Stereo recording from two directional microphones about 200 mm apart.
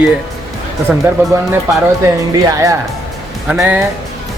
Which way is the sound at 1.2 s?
10° right (ahead or behind).